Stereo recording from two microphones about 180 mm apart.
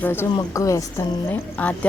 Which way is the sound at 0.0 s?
10° left (ahead or behind).